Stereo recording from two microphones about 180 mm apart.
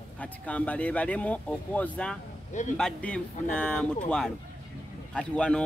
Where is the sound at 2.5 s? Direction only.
40° left (ahead or behind).